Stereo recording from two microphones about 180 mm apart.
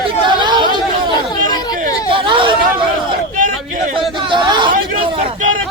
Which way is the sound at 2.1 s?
30° right (ahead or behind).